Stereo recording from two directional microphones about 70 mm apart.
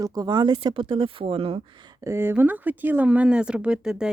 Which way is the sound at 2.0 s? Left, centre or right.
Right.